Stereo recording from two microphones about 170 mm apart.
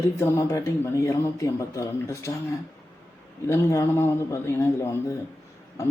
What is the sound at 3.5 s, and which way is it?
A man's voice, 15° left (ahead or behind).